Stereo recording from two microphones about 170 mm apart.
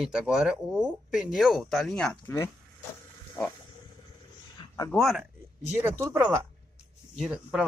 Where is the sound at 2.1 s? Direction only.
10° left (ahead or behind).